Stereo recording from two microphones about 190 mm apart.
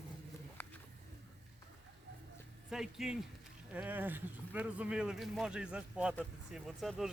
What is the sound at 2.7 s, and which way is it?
Speech, centre (ahead or behind).